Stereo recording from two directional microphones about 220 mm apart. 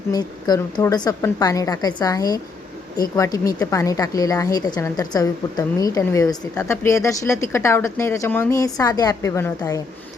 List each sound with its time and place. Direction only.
0.1 s a woman's voice: 20° left (ahead or behind)